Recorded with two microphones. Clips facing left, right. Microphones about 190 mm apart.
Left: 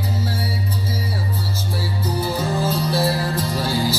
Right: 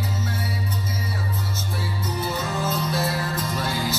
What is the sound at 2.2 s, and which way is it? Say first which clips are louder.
Music: left 4 dB; 30° left (ahead or behind).